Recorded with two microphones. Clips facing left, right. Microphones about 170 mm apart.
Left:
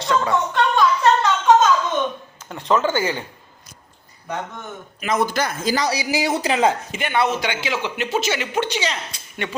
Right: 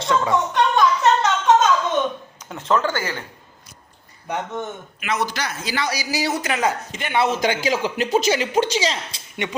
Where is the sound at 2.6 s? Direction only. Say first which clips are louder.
Left 2 dB; 15° left (ahead or behind).